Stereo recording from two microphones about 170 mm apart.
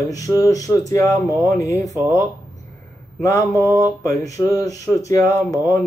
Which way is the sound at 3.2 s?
20° left (ahead or behind).